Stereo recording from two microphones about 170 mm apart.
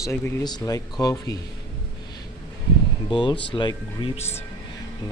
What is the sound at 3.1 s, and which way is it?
Speech, 25° left (ahead or behind).